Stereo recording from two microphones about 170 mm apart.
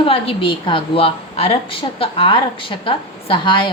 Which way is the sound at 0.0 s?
30° left (ahead or behind).